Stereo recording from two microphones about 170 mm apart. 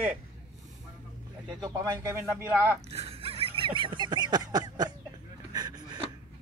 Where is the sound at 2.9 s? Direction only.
35° right (ahead or behind).